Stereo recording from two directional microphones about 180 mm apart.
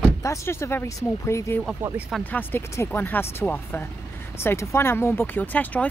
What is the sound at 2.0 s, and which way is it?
Speech, 5° left (ahead or behind).